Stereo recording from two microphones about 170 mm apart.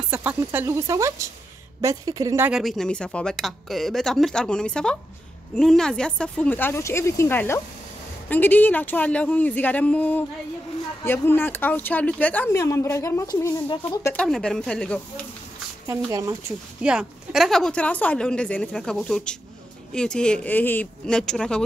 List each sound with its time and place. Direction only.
0.1 s speech: 10° right (ahead or behind)
2.5 s a woman's voice: centre (ahead or behind); by 14.1 s 20° left (ahead or behind)
14.1 s a woman's voice: 5° left (ahead or behind)
16.1 s speech: 20° right (ahead or behind)
16.8 s a woman's voice: 5° right (ahead or behind)